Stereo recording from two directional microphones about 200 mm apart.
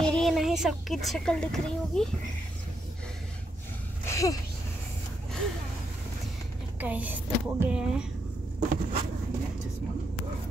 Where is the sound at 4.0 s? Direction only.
15° left (ahead or behind).